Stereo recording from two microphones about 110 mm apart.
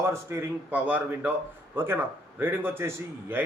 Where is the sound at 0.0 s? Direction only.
25° right (ahead or behind).